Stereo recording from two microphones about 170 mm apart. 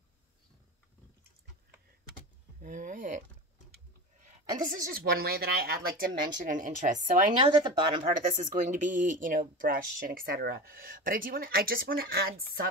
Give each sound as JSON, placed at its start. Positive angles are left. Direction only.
{"t": 2.6, "sound": "speech", "side_deg": -50}
{"t": 4.6, "sound": "speech", "side_deg": -55}
{"t": 7.3, "sound": "speech", "side_deg": -25}
{"t": 8.0, "sound": "speech", "side_deg": -50}